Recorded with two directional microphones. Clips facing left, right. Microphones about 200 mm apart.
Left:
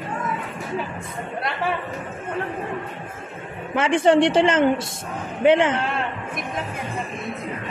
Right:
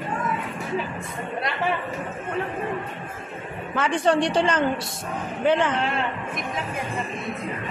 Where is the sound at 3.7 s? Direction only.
25° left (ahead or behind).